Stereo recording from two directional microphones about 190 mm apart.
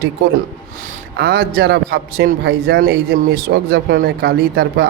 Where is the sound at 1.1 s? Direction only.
55° right (ahead or behind).